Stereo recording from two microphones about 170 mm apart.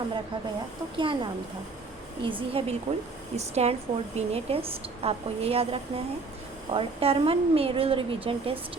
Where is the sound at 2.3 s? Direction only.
30° right (ahead or behind).